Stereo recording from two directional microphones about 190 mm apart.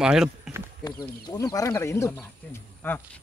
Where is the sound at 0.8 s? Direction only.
20° left (ahead or behind).